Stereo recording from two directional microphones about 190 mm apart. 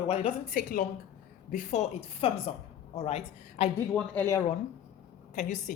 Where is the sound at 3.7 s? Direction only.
10° left (ahead or behind).